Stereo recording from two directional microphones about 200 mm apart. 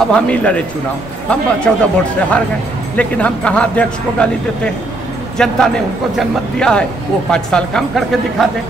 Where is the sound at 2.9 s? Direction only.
5° left (ahead or behind).